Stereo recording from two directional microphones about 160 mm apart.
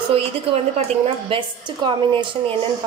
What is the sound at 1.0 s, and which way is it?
A woman's voice, 30° right (ahead or behind).